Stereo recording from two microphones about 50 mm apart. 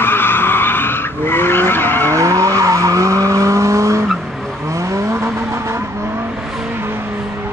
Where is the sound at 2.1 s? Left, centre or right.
Right.